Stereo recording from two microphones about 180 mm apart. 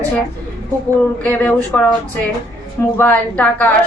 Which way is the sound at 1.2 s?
10° left (ahead or behind).